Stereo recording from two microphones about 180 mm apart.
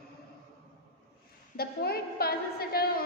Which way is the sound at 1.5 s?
60° left (ahead or behind).